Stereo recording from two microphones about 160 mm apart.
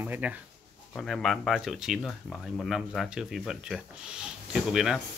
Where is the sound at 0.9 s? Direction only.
5° left (ahead or behind).